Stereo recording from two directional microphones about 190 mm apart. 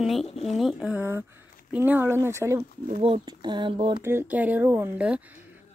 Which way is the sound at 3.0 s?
25° right (ahead or behind).